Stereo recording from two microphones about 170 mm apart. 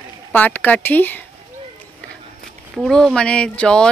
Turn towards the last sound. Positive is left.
turn(degrees=5)  # may be behind; listen again after turning